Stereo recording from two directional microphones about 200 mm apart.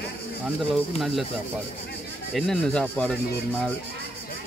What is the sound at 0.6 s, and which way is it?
Speech, centre (ahead or behind).